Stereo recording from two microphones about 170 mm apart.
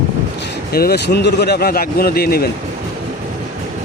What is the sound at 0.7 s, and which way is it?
A man's voice, 65° left (ahead or behind).